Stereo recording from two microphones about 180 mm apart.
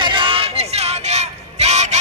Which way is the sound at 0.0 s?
25° right (ahead or behind).